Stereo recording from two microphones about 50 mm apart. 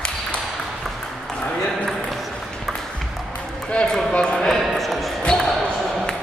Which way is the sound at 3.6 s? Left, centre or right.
Centre.